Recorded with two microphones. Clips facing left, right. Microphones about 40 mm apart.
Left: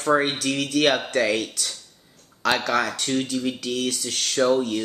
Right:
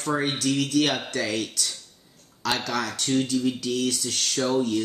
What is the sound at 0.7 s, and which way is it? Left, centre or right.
Speech, left.